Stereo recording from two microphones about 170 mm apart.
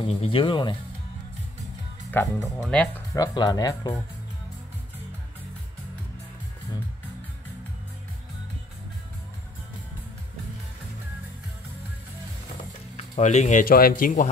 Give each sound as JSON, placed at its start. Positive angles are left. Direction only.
{"t": 0.0, "sound": "speech", "side_deg": 35}
{"t": 2.0, "sound": "speech", "side_deg": 10}
{"t": 3.2, "sound": "speech", "side_deg": 25}
{"t": 12.9, "sound": "speech", "side_deg": 45}